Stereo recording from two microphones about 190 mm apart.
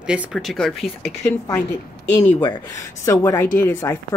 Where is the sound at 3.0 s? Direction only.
15° left (ahead or behind).